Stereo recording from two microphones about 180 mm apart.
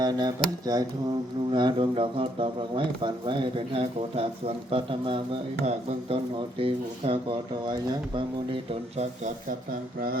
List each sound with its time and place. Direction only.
0.0 s speech: 20° right (ahead or behind)
6.6 s speech: 30° right (ahead or behind)
9.0 s speech: 40° right (ahead or behind)